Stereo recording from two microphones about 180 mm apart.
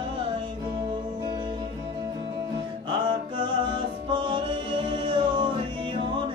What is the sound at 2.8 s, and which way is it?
Music, 25° right (ahead or behind).